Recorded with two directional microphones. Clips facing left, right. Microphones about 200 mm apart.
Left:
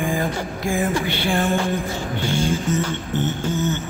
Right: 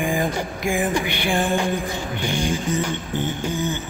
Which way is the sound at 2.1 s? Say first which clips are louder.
Left 2 dB; 15° right (ahead or behind).